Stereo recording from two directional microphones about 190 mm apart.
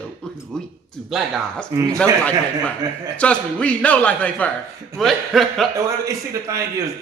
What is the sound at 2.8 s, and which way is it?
Speech, 20° right (ahead or behind).